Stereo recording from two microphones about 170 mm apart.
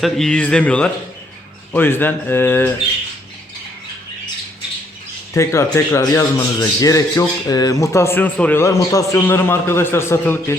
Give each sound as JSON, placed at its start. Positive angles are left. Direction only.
{"t": 0.0, "sound": "speech", "side_deg": 5}
{"t": 5.3, "sound": "speech", "side_deg": 15}